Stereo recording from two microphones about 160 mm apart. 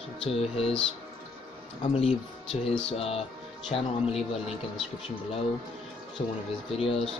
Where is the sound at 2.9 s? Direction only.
40° left (ahead or behind).